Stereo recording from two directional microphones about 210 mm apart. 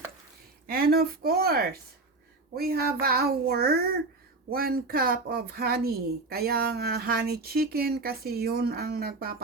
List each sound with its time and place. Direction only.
0.7 s a woman's voice: 45° right (ahead or behind)